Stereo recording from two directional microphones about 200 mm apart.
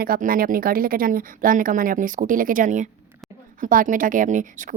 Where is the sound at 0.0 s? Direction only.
45° right (ahead or behind).